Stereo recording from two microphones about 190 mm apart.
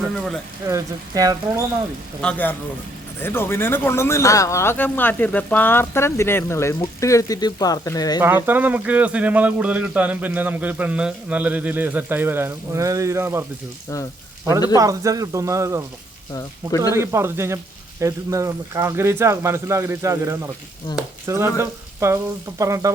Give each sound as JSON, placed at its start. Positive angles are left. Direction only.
{"t": 0.7, "sound": "speech", "side_deg": -20}
{"t": 2.2, "sound": "speech", "side_deg": 10}
{"t": 8.2, "sound": "a man's voice", "side_deg": -10}
{"t": 13.9, "sound": "speech", "side_deg": 15}
{"t": 14.8, "sound": "a man's voice", "side_deg": -20}
{"t": 16.3, "sound": "speech", "side_deg": 20}
{"t": 16.9, "sound": "a man's voice", "side_deg": -15}
{"t": 20.9, "sound": "speech", "side_deg": 20}
{"t": 21.2, "sound": "a man's voice", "side_deg": -15}